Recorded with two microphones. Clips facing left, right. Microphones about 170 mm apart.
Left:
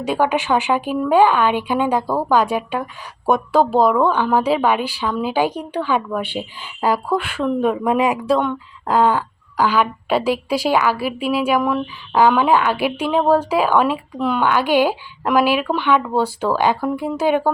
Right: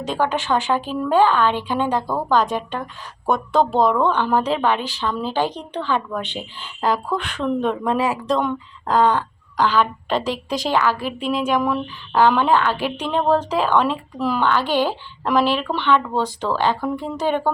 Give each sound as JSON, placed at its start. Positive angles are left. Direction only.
{"t": 0.0, "sound": "speech", "side_deg": 10}
{"t": 8.3, "sound": "speech", "side_deg": 0}
{"t": 14.4, "sound": "speech", "side_deg": 10}